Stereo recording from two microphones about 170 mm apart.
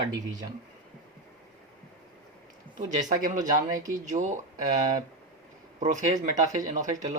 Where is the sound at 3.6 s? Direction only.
20° right (ahead or behind).